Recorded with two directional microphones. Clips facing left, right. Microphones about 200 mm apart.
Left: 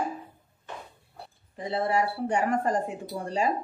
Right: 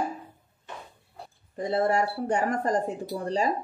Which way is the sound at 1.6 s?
45° right (ahead or behind).